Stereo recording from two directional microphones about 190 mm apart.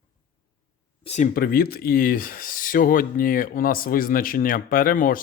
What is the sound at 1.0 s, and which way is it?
Speech, 40° left (ahead or behind).